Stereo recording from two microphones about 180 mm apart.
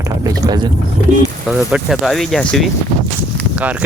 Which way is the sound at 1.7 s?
5° right (ahead or behind).